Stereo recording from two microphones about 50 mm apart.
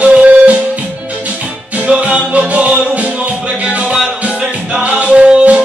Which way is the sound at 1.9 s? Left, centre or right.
Right.